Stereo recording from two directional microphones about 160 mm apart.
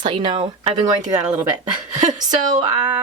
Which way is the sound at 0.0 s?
30° right (ahead or behind).